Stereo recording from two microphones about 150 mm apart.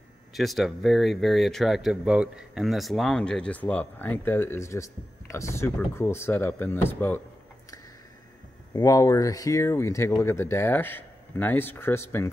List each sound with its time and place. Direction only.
0.3 s speech: centre (ahead or behind)
8.7 s speech: 25° left (ahead or behind)